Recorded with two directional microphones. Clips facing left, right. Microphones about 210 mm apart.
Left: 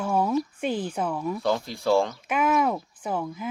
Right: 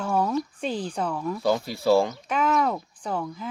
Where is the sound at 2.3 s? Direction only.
10° left (ahead or behind).